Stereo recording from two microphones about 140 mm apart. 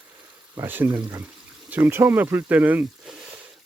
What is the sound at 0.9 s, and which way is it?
Speech, 30° right (ahead or behind).